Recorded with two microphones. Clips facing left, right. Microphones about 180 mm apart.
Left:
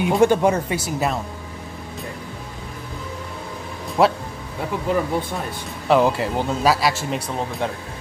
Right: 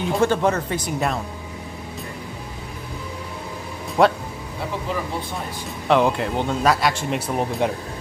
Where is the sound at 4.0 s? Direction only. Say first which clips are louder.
Even; centre (ahead or behind).